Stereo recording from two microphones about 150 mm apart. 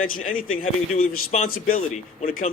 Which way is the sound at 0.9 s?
50° left (ahead or behind).